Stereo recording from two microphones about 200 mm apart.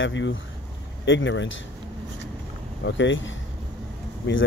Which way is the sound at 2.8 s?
65° left (ahead or behind).